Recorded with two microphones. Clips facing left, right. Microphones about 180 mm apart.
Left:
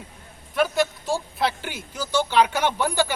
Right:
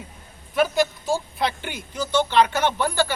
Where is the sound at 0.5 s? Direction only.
Centre (ahead or behind).